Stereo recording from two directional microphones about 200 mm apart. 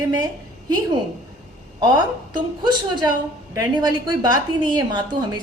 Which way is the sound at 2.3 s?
20° right (ahead or behind).